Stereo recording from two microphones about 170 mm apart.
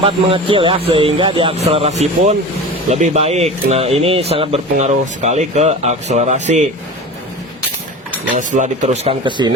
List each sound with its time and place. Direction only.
0.0 s speech: 30° right (ahead or behind)
8.4 s speech: 50° right (ahead or behind)